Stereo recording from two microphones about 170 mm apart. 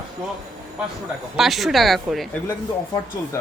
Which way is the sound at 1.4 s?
Centre (ahead or behind).